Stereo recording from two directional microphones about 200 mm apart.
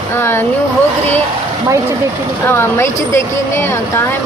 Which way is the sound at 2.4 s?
10° left (ahead or behind).